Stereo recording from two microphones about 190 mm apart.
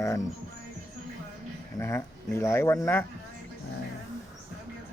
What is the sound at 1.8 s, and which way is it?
Speech, 15° left (ahead or behind).